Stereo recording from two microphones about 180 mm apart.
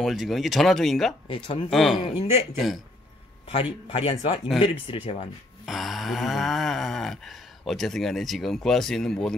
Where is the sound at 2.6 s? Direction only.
Centre (ahead or behind).